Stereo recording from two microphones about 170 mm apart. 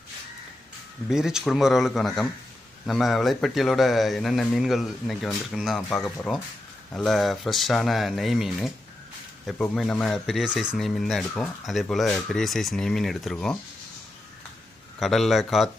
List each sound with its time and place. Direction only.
1.0 s speech: 5° right (ahead or behind)
15.0 s speech: centre (ahead or behind)